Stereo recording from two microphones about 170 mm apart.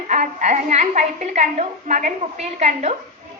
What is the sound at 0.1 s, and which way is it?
A woman's voice, 45° right (ahead or behind).